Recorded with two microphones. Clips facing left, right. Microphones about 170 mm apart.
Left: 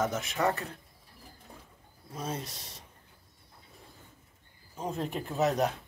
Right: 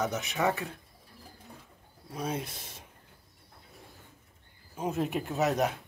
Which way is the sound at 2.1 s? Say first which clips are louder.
Right 3 dB; 10° right (ahead or behind).